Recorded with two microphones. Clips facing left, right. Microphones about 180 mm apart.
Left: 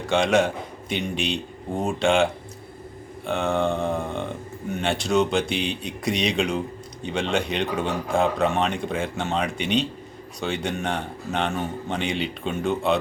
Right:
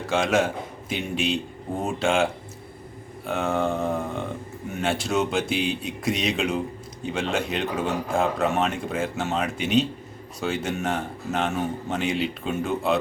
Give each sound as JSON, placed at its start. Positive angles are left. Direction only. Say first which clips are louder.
{"t": 0.1, "sound": "speech", "louder": "left 2 dB", "side_deg": -5}
{"t": 3.2, "sound": "speech", "louder": "left 1 dB", "side_deg": -5}